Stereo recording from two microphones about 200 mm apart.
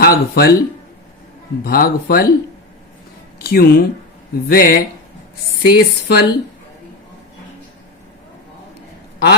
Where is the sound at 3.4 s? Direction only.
50° left (ahead or behind).